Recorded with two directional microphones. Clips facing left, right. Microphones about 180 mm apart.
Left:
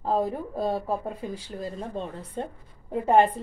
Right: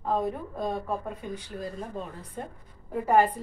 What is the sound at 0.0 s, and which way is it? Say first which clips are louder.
A woman's voice: left 2 dB; 30° left (ahead or behind).